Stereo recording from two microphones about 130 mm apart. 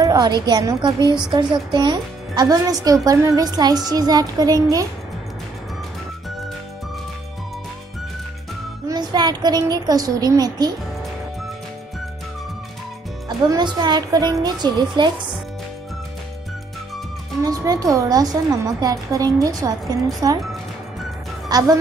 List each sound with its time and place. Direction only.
0.0 s a woman's voice: 30° right (ahead or behind)
8.8 s a woman's voice: 30° right (ahead or behind)
13.5 s a woman's voice: 35° right (ahead or behind)
17.4 s a woman's voice: 25° right (ahead or behind)
21.5 s speech: 30° right (ahead or behind)